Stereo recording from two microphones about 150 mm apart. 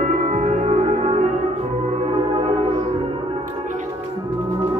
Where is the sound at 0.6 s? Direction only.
45° right (ahead or behind).